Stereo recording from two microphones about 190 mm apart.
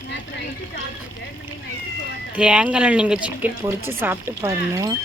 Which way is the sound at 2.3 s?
5° right (ahead or behind).